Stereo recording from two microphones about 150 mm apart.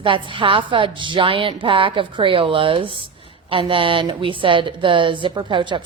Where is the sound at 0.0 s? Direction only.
35° right (ahead or behind).